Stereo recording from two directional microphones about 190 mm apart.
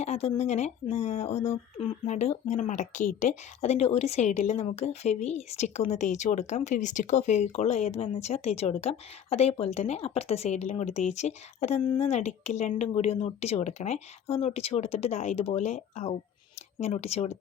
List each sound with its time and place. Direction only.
0.0 s speech: 35° left (ahead or behind)